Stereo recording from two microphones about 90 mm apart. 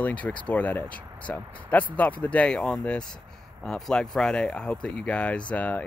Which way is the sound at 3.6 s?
5° left (ahead or behind).